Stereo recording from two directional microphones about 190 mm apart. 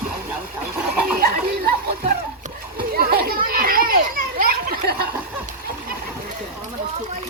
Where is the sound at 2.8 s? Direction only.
55° right (ahead or behind).